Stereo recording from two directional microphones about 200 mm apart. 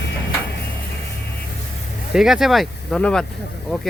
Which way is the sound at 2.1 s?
Centre (ahead or behind).